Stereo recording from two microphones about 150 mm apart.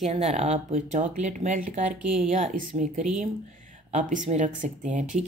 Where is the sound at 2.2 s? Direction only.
55° right (ahead or behind).